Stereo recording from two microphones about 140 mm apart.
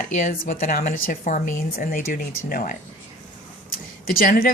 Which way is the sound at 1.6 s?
85° left.